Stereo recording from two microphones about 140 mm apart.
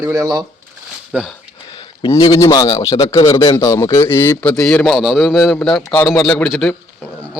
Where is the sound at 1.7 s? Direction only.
30° left (ahead or behind).